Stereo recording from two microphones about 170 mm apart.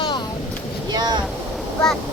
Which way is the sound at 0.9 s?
25° right (ahead or behind).